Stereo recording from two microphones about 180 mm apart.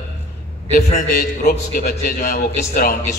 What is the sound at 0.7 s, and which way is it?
A man's voice, 55° left (ahead or behind).